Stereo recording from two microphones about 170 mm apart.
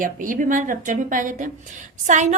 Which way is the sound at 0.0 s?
50° right (ahead or behind).